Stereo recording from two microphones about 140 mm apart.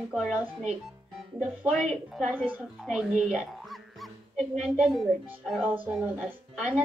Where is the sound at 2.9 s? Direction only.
5° right (ahead or behind).